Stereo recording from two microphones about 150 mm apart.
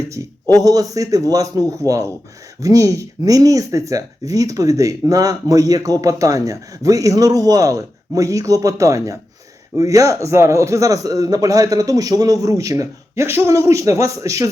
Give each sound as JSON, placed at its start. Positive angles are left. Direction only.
{"t": 0.1, "sound": "speech", "side_deg": -25}